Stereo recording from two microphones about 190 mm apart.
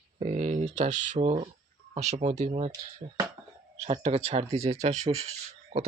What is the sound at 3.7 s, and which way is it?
Speech, 30° right (ahead or behind).